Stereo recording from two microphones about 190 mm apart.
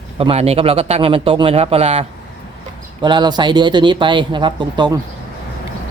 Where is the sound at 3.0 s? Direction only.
25° right (ahead or behind).